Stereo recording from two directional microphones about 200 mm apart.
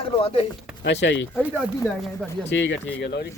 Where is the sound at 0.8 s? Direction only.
60° left (ahead or behind).